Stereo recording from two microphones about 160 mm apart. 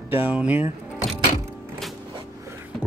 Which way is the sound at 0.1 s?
10° right (ahead or behind).